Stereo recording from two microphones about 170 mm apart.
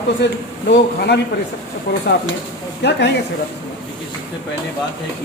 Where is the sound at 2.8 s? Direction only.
90° left.